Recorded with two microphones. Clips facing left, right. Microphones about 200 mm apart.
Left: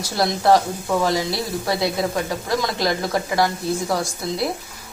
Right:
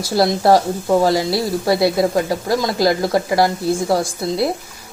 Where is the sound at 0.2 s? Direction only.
35° right (ahead or behind).